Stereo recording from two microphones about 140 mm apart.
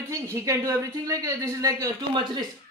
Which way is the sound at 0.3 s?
20° right (ahead or behind).